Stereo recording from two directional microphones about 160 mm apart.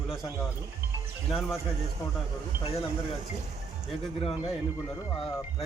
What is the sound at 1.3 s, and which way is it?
Speech, centre (ahead or behind).